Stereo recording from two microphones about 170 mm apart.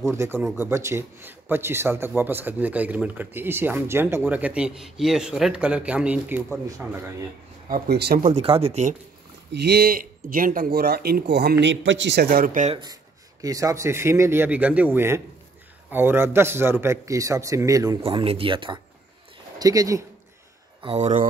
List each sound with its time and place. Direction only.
0.0 s speech: 15° right (ahead or behind)
7.9 s speech: 70° right (ahead or behind)
8.3 s speech: 35° right (ahead or behind)
9.5 s speech: 75° right (ahead or behind)
12.7 s speech: 20° right (ahead or behind)
18.0 s speech: 35° right (ahead or behind)
20.8 s speech: 40° right (ahead or behind)